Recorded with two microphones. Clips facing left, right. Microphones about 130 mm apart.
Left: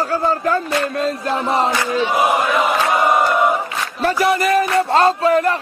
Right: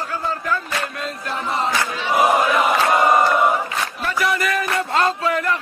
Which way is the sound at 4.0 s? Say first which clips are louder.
Left 7 dB; 35° left (ahead or behind).